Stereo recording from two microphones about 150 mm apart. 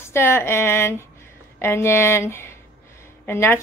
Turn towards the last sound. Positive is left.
turn(degrees=15)  # may be behind; listen again after turning